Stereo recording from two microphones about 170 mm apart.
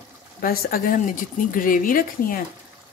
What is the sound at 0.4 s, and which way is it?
Speech, 60° left (ahead or behind).